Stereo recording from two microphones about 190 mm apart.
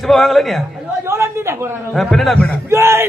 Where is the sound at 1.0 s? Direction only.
15° right (ahead or behind).